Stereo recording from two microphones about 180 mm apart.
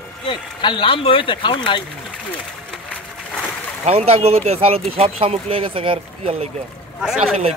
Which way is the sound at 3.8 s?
35° right (ahead or behind).